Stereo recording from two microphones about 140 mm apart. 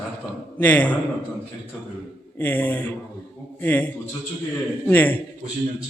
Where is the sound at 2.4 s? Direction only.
15° left (ahead or behind).